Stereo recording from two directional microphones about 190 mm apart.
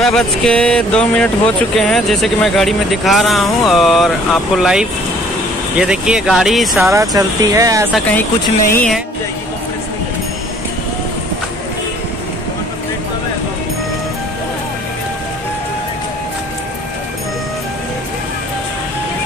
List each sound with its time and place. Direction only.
0.0 s speech: 5° left (ahead or behind)
6.9 s speech: 15° right (ahead or behind)
8.7 s speech: 5° left (ahead or behind)